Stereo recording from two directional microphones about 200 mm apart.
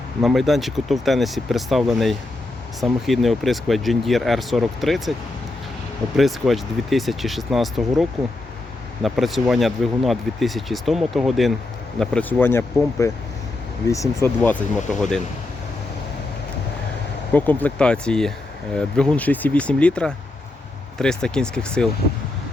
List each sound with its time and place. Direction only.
0.2 s speech: centre (ahead or behind)
6.1 s speech: centre (ahead or behind)
9.0 s speech: centre (ahead or behind)
17.3 s speech: 10° left (ahead or behind)